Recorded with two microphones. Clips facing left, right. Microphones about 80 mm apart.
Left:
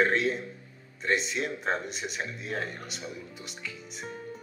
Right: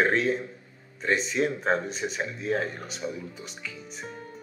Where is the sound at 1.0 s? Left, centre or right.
Centre.